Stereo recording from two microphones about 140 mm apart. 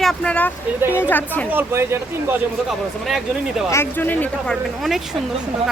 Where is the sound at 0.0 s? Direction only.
5° left (ahead or behind).